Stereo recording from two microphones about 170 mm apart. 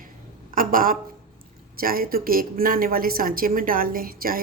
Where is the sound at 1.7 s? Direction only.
60° right (ahead or behind).